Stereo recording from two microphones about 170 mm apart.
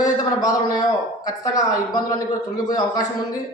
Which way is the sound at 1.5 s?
20° left (ahead or behind).